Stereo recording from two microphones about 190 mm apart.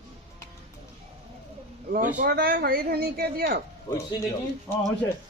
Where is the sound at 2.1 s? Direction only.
50° right (ahead or behind).